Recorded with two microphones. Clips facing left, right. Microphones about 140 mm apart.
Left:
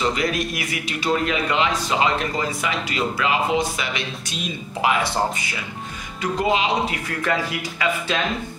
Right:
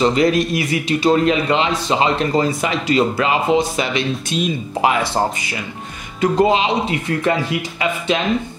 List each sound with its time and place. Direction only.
0.0 s a man's voice: 30° right (ahead or behind)
6.2 s a man's voice: 30° right (ahead or behind)